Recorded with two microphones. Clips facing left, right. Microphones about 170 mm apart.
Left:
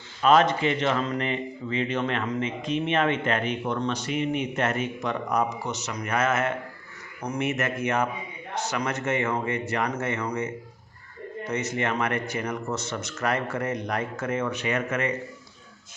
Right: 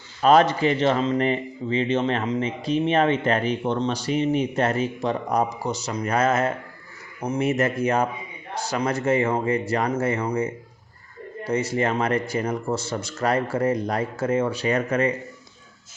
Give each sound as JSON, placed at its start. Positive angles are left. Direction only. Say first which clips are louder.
{"t": 0.2, "sound": "speech", "louder": "right 3 dB", "side_deg": -40}